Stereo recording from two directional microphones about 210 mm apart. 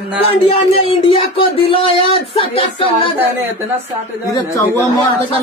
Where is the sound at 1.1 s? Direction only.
25° left (ahead or behind).